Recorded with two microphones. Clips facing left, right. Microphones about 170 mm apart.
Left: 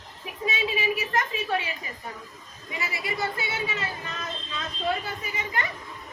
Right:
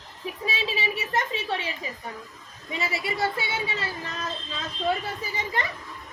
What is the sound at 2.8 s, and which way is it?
Speech, 30° right (ahead or behind).